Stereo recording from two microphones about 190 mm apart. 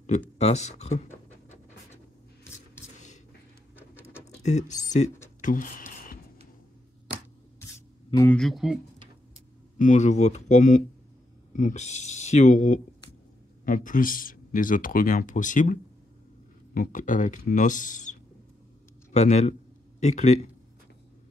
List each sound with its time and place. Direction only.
0.4 s pant: 35° left (ahead or behind)
4.4 s speech: 40° left (ahead or behind)
5.4 s a sound: 45° left (ahead or behind)
8.2 s speech: 5° left (ahead or behind)
9.8 s speech: 40° left (ahead or behind)
19.1 s speech: 35° left (ahead or behind)